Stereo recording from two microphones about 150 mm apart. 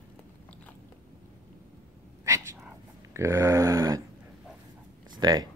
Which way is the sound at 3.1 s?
20° right (ahead or behind).